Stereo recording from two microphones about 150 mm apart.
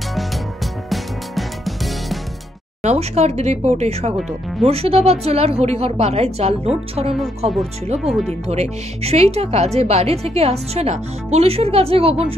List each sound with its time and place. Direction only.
0.8 s music: centre (ahead or behind)
2.8 s speech: 45° right (ahead or behind)
7.2 s speech: centre (ahead or behind)
8.3 s speech: 45° right (ahead or behind)